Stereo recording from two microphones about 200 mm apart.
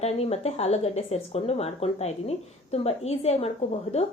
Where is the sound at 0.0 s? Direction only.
30° left (ahead or behind).